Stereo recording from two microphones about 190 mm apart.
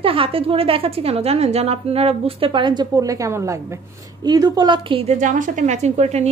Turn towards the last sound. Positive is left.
turn(degrees=-35)  # may be behind; listen again after turning